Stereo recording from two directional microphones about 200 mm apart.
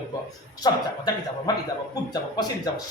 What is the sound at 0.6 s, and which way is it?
Speech, 20° left (ahead or behind).